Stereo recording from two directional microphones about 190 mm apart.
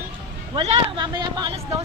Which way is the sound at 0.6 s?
30° right (ahead or behind).